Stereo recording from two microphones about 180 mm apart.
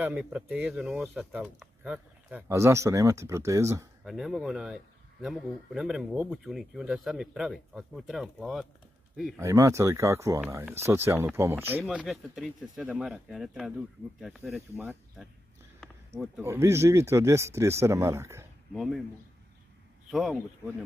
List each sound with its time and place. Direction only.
0.0 s speech: 5° right (ahead or behind)
4.0 s speech: centre (ahead or behind)
9.4 s speech: 15° right (ahead or behind); by 14.6 s centre (ahead or behind)
16.3 s speech: 15° right (ahead or behind)
18.7 s speech: centre (ahead or behind)
20.1 s a man's voice: centre (ahead or behind)